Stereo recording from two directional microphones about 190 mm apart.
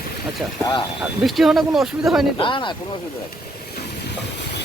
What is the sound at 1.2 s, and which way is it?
Speech, centre (ahead or behind).